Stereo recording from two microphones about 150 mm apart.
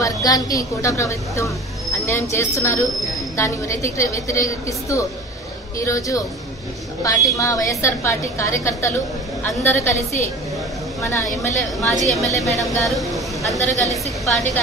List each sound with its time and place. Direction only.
0.0 s a woman's voice: 25° left (ahead or behind)
11.0 s a woman's voice: 20° left (ahead or behind)
11.8 s a woman's voice: centre (ahead or behind)